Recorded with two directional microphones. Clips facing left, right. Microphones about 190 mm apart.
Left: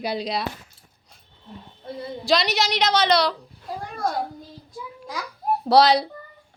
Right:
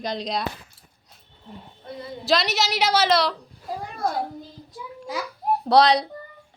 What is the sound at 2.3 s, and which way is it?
A woman's voice, centre (ahead or behind).